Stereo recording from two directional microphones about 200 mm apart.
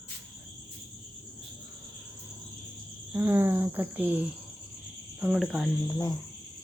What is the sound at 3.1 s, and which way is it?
Speech, 10° right (ahead or behind).